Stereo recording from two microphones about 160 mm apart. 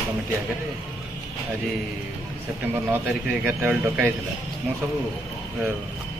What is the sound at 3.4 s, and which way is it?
Speech, 10° right (ahead or behind).